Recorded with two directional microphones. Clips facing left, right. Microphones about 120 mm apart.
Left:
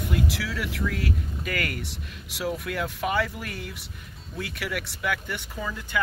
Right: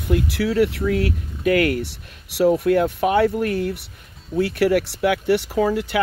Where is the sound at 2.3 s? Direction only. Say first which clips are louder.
Right 13 dB; 60° right (ahead or behind).